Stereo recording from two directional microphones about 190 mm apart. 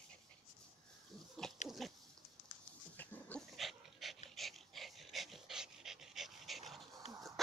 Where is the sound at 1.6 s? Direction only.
40° left (ahead or behind).